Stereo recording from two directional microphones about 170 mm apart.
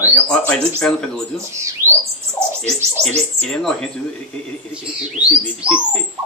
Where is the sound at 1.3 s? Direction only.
15° right (ahead or behind).